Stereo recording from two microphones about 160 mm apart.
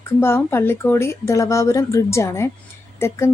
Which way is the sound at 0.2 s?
15° left (ahead or behind).